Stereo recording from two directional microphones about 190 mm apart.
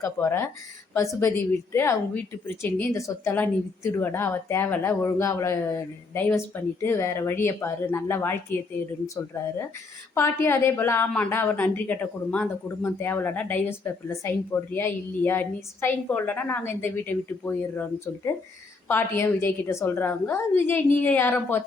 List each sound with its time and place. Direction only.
0.0 s a woman's voice: 15° left (ahead or behind)